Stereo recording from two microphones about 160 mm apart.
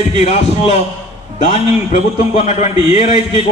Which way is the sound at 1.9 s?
45° left (ahead or behind).